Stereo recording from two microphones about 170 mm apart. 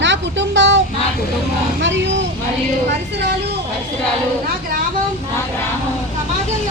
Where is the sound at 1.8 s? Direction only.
90° right.